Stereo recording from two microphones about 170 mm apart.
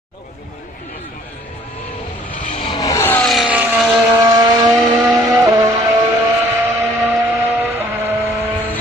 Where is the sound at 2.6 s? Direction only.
25° left (ahead or behind).